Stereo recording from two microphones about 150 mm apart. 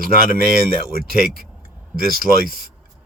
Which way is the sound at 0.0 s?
75° right (ahead or behind).